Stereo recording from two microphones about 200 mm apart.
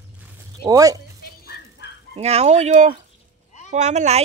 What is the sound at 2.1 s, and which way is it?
Speech, 30° right (ahead or behind).